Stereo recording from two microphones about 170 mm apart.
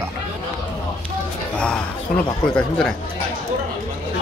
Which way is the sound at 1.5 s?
5° left (ahead or behind).